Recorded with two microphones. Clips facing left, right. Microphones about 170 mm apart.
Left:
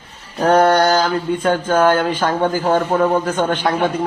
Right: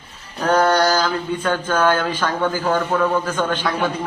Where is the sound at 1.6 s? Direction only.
40° left (ahead or behind).